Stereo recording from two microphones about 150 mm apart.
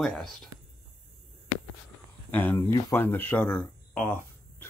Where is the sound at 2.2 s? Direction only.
10° left (ahead or behind).